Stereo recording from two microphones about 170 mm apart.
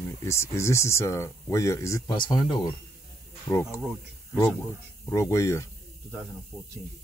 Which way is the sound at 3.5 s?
15° left (ahead or behind).